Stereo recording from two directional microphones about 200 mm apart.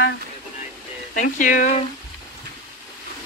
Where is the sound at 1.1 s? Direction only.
40° left (ahead or behind).